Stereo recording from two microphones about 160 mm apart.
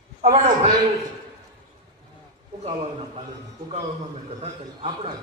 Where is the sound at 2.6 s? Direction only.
40° right (ahead or behind).